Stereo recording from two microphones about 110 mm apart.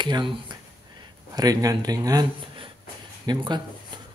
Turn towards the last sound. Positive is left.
turn(degrees=-40)  # may be behind; listen again after turning